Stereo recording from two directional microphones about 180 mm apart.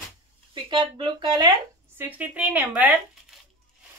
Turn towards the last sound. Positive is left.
turn(degrees=-10)  # may be behind; listen again after turning